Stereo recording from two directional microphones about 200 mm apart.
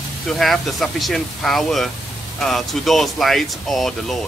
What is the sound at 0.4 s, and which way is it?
Speech, centre (ahead or behind).